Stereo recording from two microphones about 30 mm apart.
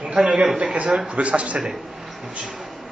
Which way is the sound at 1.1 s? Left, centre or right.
Right.